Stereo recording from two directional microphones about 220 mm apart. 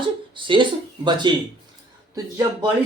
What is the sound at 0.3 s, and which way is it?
A man's voice, 20° right (ahead or behind).